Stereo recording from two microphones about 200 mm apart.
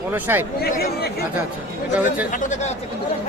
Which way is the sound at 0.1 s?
10° right (ahead or behind).